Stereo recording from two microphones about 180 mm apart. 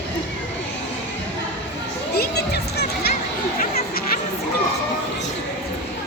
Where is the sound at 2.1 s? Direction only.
60° left (ahead or behind).